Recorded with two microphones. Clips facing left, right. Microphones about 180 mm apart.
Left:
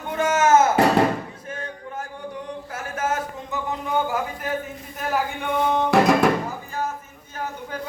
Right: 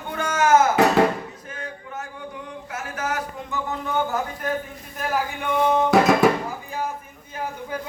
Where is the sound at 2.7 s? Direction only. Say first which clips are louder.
Left 2 dB; 30° left (ahead or behind).